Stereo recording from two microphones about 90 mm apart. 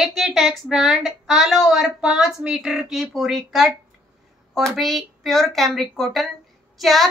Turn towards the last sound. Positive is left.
turn(degrees=0)  # may be behind; listen again after turning